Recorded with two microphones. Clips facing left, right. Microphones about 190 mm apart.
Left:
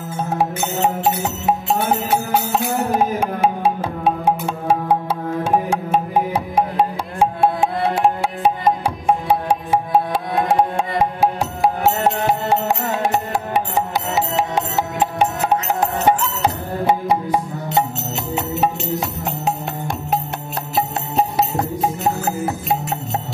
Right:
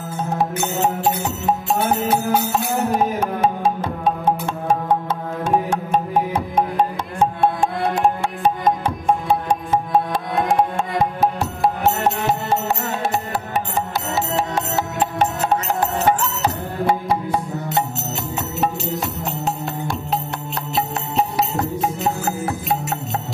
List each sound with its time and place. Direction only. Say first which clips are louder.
3.3 s music: left 1 dB; 10° left (ahead or behind)
5.4 s music: even; 10° left (ahead or behind)
12.3 s music: left 2 dB; 15° left (ahead or behind)
16.8 s music: left 2 dB; 20° left (ahead or behind)
18.9 s music: left 1 dB; 15° left (ahead or behind)